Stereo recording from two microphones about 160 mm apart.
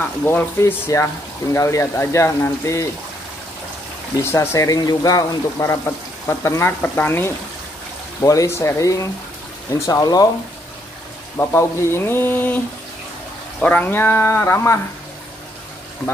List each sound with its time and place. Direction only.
0.2 s speech: 10° left (ahead or behind)
4.2 s speech: 15° left (ahead or behind)
11.3 s speech: 15° left (ahead or behind)
13.6 s speech: 10° left (ahead or behind)